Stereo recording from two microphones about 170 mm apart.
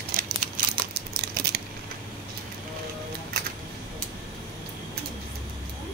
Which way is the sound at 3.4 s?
60° right (ahead or behind).